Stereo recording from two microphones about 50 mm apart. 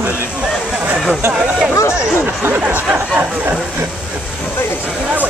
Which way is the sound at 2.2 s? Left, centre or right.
Right.